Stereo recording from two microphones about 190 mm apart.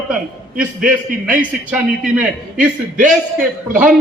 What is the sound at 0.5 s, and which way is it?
Speech, 45° right (ahead or behind).